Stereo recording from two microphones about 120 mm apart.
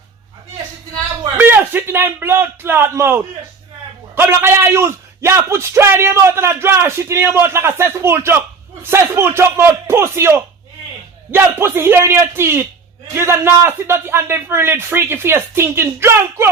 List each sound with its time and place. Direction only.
1.4 s a man's voice: 15° right (ahead or behind)